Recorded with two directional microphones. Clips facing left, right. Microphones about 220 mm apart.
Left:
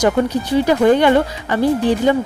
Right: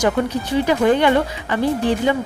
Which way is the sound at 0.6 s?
40° left (ahead or behind).